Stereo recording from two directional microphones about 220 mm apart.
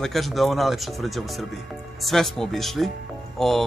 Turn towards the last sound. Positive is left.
turn(degrees=0)  # may be behind; listen again after turning